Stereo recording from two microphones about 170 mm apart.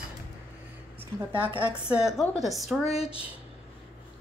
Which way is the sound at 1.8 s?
5° right (ahead or behind).